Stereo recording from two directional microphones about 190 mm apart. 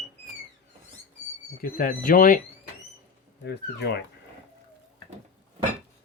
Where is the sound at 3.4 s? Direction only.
60° left (ahead or behind).